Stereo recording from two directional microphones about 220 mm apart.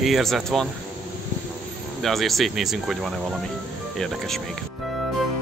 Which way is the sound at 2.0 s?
Centre (ahead or behind).